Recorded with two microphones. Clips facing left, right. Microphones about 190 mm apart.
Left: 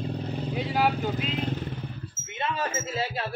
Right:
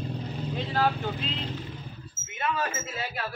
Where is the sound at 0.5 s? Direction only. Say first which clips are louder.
Left 1 dB; 10° left (ahead or behind).